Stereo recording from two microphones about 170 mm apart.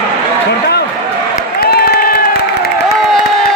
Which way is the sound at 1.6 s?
65° left (ahead or behind).